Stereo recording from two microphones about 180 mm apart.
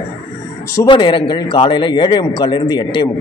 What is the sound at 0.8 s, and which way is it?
A man's voice, 25° left (ahead or behind).